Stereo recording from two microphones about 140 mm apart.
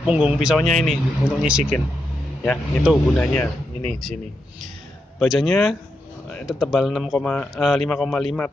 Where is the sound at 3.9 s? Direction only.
Centre (ahead or behind).